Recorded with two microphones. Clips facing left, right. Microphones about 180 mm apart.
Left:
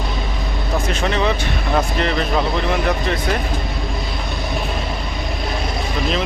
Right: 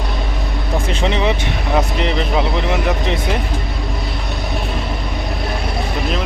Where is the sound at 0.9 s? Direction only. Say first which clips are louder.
Right 2 dB; 20° right (ahead or behind).